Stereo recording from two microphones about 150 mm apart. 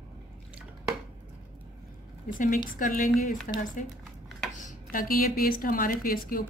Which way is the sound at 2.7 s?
65° left (ahead or behind).